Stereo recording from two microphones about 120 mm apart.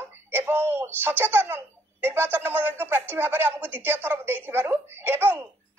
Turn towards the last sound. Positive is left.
turn(degrees=-20)  # may be behind; listen again after turning